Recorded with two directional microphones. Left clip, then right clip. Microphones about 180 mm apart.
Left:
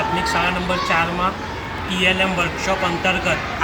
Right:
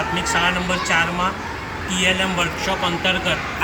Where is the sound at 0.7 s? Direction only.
Centre (ahead or behind).